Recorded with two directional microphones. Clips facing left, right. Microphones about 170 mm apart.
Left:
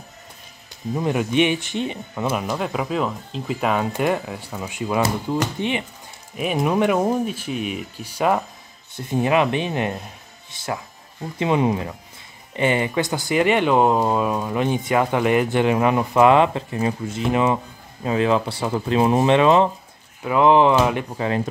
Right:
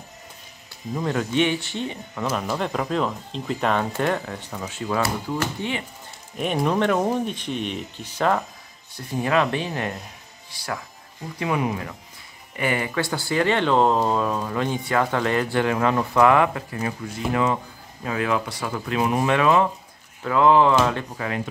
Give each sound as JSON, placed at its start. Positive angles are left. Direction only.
{"t": 0.9, "sound": "speech", "side_deg": 15}
{"t": 2.5, "sound": "speech", "side_deg": 5}
{"t": 6.3, "sound": "speech", "side_deg": 5}